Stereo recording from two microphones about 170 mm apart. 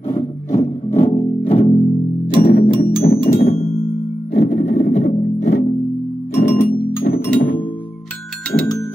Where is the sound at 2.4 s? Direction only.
60° left (ahead or behind).